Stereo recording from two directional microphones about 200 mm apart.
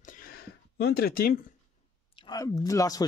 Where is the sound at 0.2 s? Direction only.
50° left (ahead or behind).